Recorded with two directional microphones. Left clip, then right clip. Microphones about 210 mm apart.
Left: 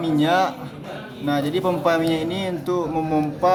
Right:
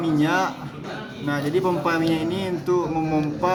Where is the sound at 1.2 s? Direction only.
30° left (ahead or behind).